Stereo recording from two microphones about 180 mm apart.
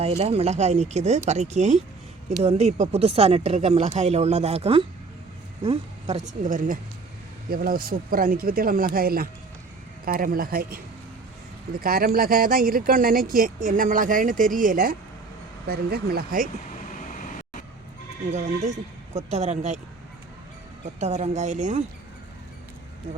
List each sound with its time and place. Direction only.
0.0 s speech: 35° right (ahead or behind); by 10.8 s 55° right (ahead or behind)
11.8 s speech: 55° right (ahead or behind)
16.9 s vehicle: 45° left (ahead or behind)
18.3 s speech: 40° right (ahead or behind)
21.0 s speech: 40° right (ahead or behind)